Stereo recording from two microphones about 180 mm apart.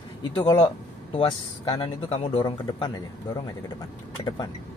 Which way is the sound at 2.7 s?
20° left (ahead or behind).